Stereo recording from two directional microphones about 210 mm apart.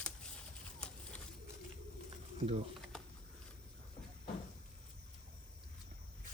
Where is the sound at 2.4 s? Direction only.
30° right (ahead or behind).